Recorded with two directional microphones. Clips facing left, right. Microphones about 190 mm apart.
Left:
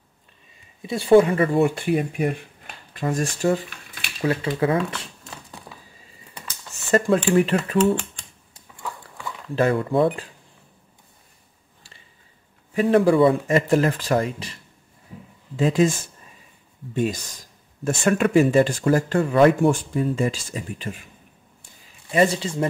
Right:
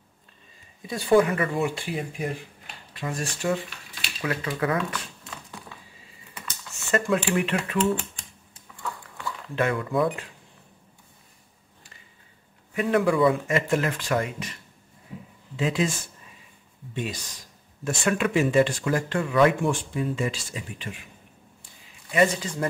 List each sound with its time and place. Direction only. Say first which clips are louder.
0.8 s speech: left 5 dB; 25° left (ahead or behind)
1.5 s speech: left 8 dB; 55° left (ahead or behind)
4.2 s speech: left 6 dB; 30° left (ahead or behind)
6.9 s speech: left 6 dB; 35° left (ahead or behind)
7.7 s speech: left 5 dB; centre (ahead or behind)
9.6 s speech: left 5 dB; 35° left (ahead or behind)
12.7 s speech: left 5 dB; 30° left (ahead or behind)
15.5 s speech: left 6 dB; 45° left (ahead or behind); by 22.7 s 30° left (ahead or behind)